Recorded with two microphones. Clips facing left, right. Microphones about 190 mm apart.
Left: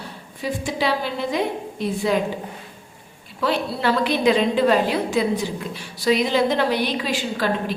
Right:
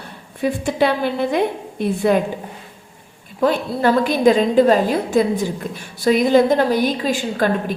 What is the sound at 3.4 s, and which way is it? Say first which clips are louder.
A woman's voice: right 5 dB; 50° right (ahead or behind).